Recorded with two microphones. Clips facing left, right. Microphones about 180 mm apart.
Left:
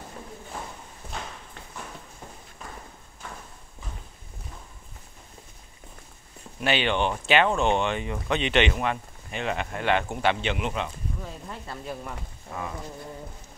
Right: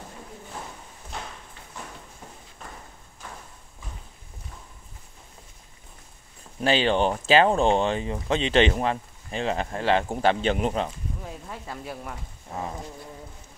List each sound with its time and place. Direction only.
6.6 s speech: 35° right (ahead or behind)
11.2 s speech: 10° right (ahead or behind)